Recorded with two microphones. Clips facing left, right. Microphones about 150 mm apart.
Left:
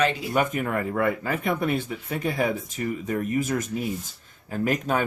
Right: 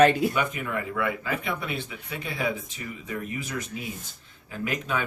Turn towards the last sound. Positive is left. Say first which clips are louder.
# left 5 dB
turn(degrees=45)  # may be behind; listen again after turning